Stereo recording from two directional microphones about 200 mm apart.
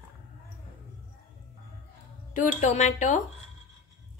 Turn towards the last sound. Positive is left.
turn(degrees=40)  # may be behind; listen again after turning